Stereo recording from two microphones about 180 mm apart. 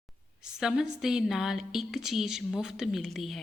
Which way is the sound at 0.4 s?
5° right (ahead or behind).